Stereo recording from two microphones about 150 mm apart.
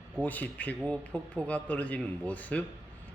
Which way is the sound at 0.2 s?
10° left (ahead or behind).